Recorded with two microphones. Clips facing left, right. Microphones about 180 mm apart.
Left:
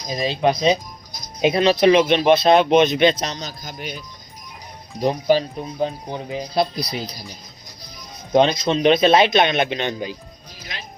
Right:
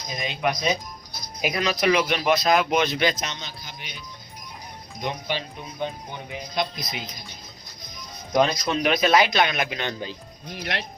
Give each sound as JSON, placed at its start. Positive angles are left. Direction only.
{"t": 0.1, "sound": "speech", "side_deg": 30}
{"t": 10.5, "sound": "speech", "side_deg": -65}